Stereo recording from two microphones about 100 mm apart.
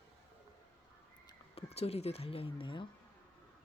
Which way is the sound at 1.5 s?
90° left.